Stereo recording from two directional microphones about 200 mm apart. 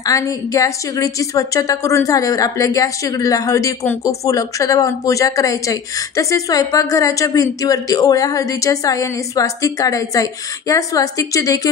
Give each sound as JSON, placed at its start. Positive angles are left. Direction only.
{"t": 0.0, "sound": "a woman's voice", "side_deg": 15}